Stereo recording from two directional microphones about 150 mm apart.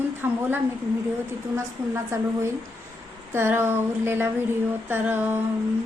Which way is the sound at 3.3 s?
15° right (ahead or behind).